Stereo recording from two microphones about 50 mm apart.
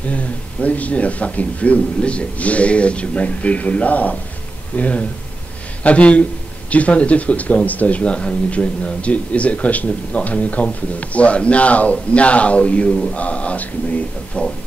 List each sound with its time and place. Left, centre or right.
0.1 s speech: left